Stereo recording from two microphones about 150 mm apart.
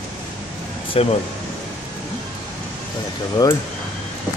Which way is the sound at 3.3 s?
25° left (ahead or behind).